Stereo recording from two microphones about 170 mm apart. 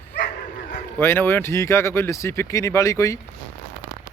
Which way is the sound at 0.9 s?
15° left (ahead or behind).